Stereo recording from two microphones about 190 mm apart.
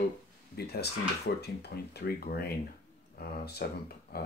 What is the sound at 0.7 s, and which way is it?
Speech, 60° left (ahead or behind).